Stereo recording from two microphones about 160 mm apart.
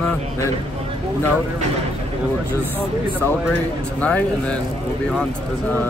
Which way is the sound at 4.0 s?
10° left (ahead or behind).